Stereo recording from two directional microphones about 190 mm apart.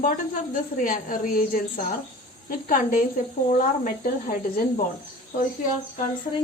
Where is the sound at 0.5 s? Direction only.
45° left (ahead or behind).